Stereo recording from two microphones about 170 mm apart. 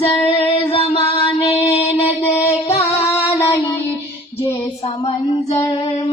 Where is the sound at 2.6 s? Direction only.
35° left (ahead or behind).